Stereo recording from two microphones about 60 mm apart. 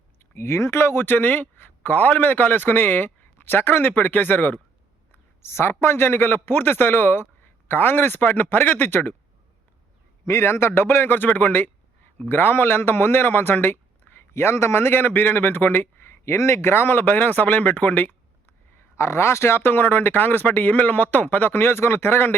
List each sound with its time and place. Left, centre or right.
0.2 s a man's voice: left
5.4 s a man's voice: left
10.2 s a man's voice: left
18.8 s a man's voice: left